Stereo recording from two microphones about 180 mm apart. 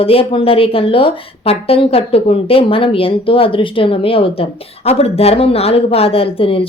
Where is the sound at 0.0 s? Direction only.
30° left (ahead or behind).